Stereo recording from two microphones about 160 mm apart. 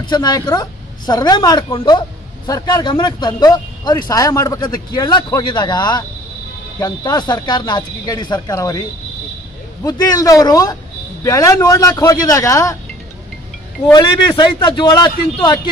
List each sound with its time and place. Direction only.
0.0 s speech: 25° left (ahead or behind)
9.8 s speech: 25° left (ahead or behind)
13.9 s speech: 25° left (ahead or behind)